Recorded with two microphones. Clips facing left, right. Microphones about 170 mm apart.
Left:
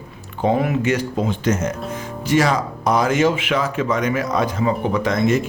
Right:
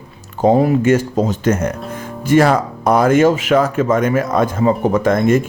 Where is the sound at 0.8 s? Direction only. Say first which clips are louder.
Right 6 dB; 45° right (ahead or behind).